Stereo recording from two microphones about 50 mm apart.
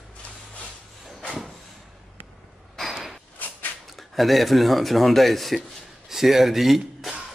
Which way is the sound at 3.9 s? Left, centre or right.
Centre.